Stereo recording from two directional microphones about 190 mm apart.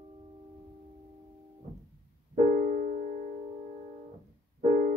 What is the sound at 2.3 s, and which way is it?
Music, 45° right (ahead or behind).